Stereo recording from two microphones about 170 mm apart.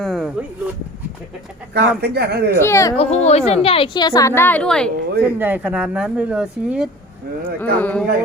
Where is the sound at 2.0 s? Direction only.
70° right (ahead or behind).